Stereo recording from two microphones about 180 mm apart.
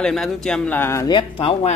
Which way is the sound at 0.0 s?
Centre (ahead or behind).